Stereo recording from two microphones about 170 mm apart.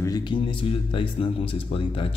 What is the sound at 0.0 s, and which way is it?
Speech, 25° left (ahead or behind).